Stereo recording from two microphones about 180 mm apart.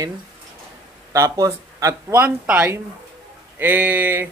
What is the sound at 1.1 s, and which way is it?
Speech, 20° right (ahead or behind).